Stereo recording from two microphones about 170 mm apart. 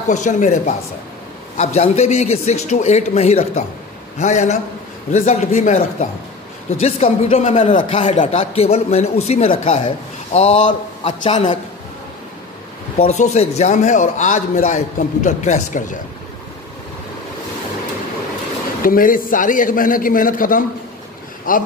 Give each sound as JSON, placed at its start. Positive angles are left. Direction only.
{"t": 0.1, "sound": "a man's voice", "side_deg": 45}
{"t": 6.8, "sound": "a man's voice", "side_deg": 35}
{"t": 13.0, "sound": "a man's voice", "side_deg": 45}
{"t": 18.8, "sound": "a man's voice", "side_deg": 55}